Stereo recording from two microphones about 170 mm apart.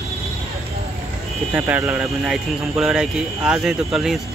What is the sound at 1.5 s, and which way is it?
Speech, 10° right (ahead or behind).